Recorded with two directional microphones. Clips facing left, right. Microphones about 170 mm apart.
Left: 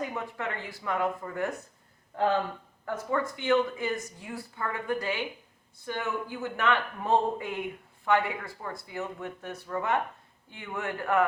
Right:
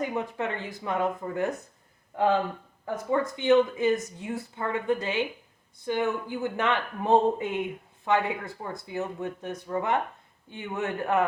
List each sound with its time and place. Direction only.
0.1 s speech: 20° right (ahead or behind)
2.8 s speech: 20° right (ahead or behind)